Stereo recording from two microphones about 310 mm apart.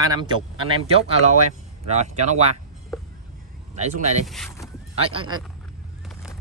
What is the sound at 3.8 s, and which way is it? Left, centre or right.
Speech, right.